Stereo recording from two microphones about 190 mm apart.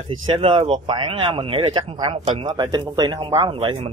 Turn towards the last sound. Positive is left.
turn(degrees=-30)  # may be behind; listen again after turning